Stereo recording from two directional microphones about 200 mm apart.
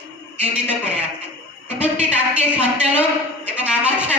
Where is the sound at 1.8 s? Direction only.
5° right (ahead or behind).